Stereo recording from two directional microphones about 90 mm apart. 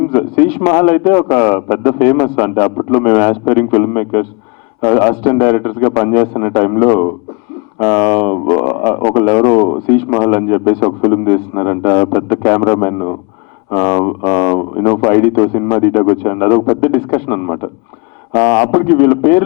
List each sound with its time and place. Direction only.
0.1 s a man's voice: 15° left (ahead or behind)
0.4 s a man's voice: centre (ahead or behind); by 3.0 s 20° left (ahead or behind)
3.0 s a man's voice: 10° left (ahead or behind)